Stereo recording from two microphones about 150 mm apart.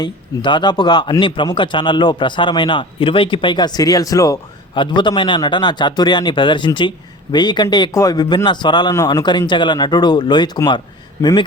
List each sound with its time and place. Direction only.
0.0 s a man's voice: 30° left (ahead or behind)